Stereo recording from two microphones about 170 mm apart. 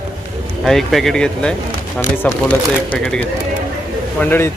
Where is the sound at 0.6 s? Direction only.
Centre (ahead or behind).